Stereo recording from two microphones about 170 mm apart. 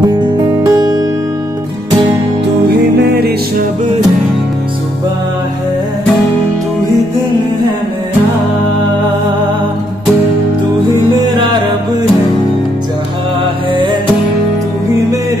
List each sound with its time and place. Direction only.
0.7 s music: 20° right (ahead or behind)
2.4 s music: 75° right (ahead or behind)